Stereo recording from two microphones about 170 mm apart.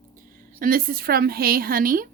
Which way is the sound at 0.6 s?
55° right (ahead or behind).